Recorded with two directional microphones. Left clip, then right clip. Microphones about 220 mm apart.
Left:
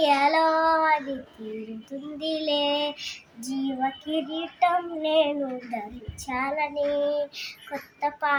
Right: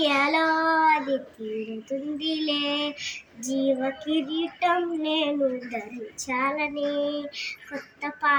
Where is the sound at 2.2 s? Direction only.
20° left (ahead or behind).